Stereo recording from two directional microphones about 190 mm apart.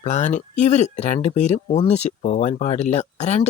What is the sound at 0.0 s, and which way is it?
Speech, 40° left (ahead or behind).